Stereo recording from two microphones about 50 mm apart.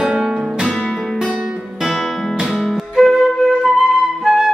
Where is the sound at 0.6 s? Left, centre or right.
Centre.